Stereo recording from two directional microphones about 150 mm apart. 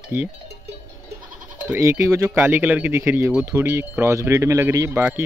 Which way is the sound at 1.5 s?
15° right (ahead or behind).